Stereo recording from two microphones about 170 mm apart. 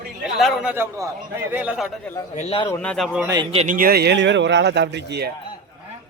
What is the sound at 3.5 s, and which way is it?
Speech, 40° right (ahead or behind).